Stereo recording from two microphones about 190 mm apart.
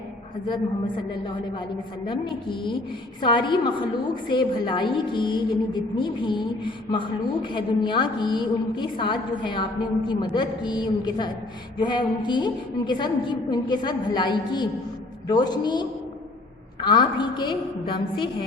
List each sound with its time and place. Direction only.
2.0 s a woman's voice: 25° left (ahead or behind)